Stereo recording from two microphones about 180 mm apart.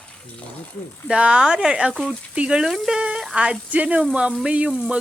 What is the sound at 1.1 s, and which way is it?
Speech, 5° right (ahead or behind).